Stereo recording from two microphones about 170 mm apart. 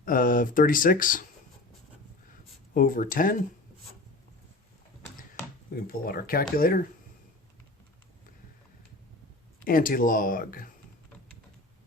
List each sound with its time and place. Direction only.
0.0 s speech: 55° left (ahead or behind)
2.7 s speech: 55° left (ahead or behind)
5.7 s speech: 60° left (ahead or behind)
9.6 s speech: 55° left (ahead or behind)